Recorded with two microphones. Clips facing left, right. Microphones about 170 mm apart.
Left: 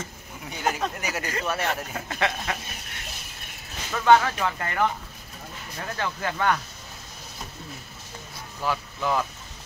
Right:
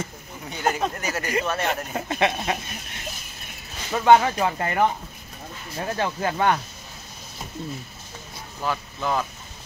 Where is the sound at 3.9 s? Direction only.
20° right (ahead or behind).